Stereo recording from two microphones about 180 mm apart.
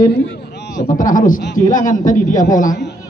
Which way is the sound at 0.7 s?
45° left (ahead or behind).